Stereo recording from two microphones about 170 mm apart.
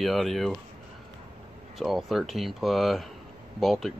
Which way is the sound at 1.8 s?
Centre (ahead or behind).